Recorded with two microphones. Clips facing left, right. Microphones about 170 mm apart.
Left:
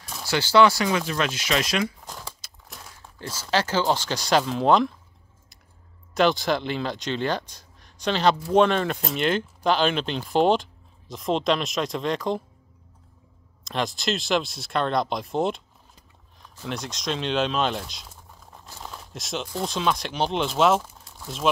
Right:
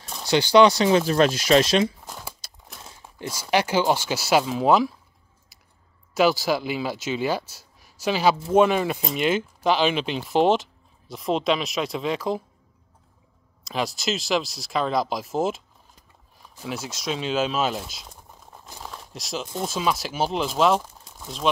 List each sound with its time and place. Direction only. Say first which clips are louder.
0.2 s speech: right 3 dB; 15° right (ahead or behind)
2.4 s crumpling: right 3 dB; 35° right (ahead or behind)
2.8 s speech: right 4 dB; 20° right (ahead or behind); by 4.9 s 5° right (ahead or behind)
6.1 s speech: right 1 dB; 5° right (ahead or behind)
13.7 s speech: even; centre (ahead or behind)
18.8 s a sound: even; centre (ahead or behind)
19.6 s speech: even; 5° right (ahead or behind)